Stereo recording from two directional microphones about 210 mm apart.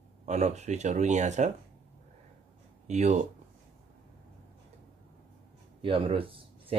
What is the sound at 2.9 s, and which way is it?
Speech, 35° right (ahead or behind).